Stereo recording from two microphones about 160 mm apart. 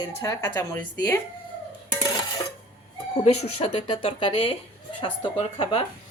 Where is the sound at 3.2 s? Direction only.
40° left (ahead or behind).